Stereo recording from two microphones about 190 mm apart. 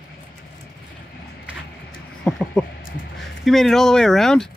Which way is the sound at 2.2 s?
5° left (ahead or behind).